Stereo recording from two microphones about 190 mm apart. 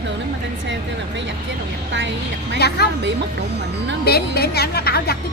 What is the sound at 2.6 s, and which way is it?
Speech, 60° left (ahead or behind).